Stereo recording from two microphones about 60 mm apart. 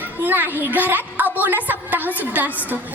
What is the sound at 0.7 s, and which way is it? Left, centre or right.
A woman's voice, right.